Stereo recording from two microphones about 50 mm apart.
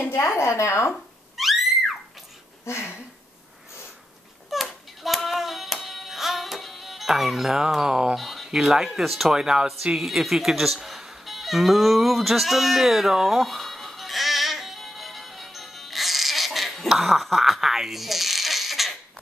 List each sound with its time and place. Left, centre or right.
0.4 s a woman's voice: left
1.3 s a sound: centre
2.6 s speech: left
4.5 s music: centre
8.2 s a sound: centre
8.5 s speech: centre
9.9 s music: centre